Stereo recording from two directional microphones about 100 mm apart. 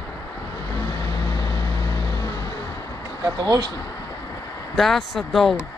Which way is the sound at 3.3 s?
40° right (ahead or behind).